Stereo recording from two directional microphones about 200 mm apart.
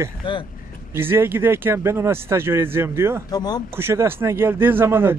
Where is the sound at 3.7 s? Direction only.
10° right (ahead or behind).